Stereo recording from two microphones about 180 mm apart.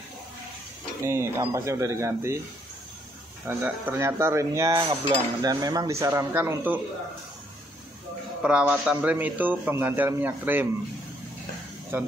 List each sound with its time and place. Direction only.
1.0 s a man's voice: 15° right (ahead or behind)
3.4 s a man's voice: 10° right (ahead or behind)
8.4 s a man's voice: 5° right (ahead or behind)
11.9 s a man's voice: 15° right (ahead or behind)